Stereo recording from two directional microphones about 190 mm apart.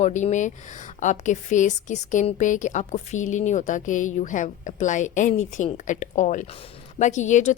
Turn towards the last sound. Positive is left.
turn(degrees=40)  # may be behind; listen again after turning